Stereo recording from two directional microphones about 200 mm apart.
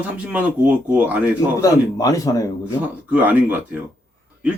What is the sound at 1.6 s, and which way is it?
Speech, 15° left (ahead or behind).